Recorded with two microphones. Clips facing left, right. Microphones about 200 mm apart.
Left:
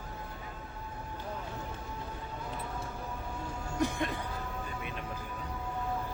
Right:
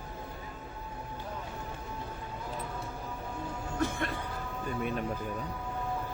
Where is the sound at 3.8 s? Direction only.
15° left (ahead or behind).